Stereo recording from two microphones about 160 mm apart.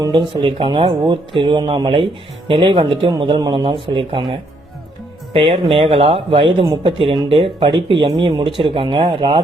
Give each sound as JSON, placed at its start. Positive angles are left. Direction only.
{"t": 0.0, "sound": "speech", "side_deg": -30}
{"t": 5.8, "sound": "speech", "side_deg": -35}